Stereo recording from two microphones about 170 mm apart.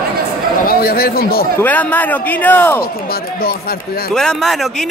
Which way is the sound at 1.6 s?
10° left (ahead or behind).